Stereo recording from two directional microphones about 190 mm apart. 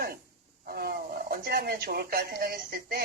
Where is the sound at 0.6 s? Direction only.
50° right (ahead or behind).